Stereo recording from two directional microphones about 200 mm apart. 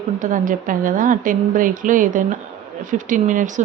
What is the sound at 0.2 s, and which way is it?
Speech, 40° right (ahead or behind).